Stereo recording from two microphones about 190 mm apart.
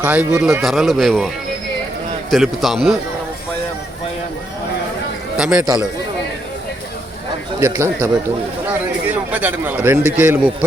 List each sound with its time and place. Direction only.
0.0 s a man's voice: 10° right (ahead or behind)
2.3 s speech: centre (ahead or behind)
5.4 s a man's voice: 5° right (ahead or behind)
7.6 s a man's voice: 15° right (ahead or behind)